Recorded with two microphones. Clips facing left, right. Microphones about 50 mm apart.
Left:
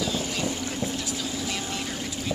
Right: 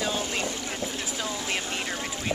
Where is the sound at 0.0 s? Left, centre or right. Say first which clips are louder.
Even; right.